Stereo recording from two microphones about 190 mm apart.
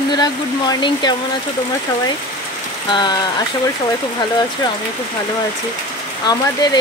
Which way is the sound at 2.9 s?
25° left (ahead or behind).